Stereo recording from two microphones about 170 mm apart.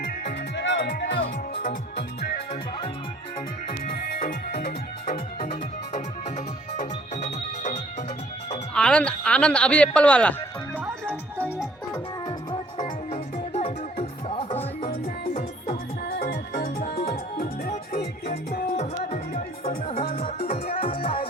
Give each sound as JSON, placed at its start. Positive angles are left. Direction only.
{"t": 0.0, "sound": "music", "side_deg": 85}
{"t": 3.7, "sound": "music", "side_deg": 65}
{"t": 6.7, "sound": "music", "side_deg": 45}
{"t": 8.7, "sound": "speech", "side_deg": 5}
{"t": 13.1, "sound": "music", "side_deg": 40}
{"t": 14.8, "sound": "music", "side_deg": 55}
{"t": 16.1, "sound": "music", "side_deg": 70}
{"t": 16.6, "sound": "music", "side_deg": 40}
{"t": 17.4, "sound": "music", "side_deg": 60}
{"t": 18.8, "sound": "music", "side_deg": 40}
{"t": 20.5, "sound": "music", "side_deg": 55}
{"t": 20.8, "sound": "music", "side_deg": 35}